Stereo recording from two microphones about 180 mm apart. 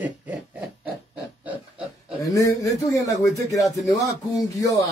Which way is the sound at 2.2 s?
20° left (ahead or behind).